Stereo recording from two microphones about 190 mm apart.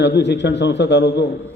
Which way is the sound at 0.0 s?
65° left (ahead or behind).